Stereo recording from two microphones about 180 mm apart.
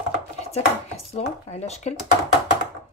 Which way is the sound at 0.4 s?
35° left (ahead or behind).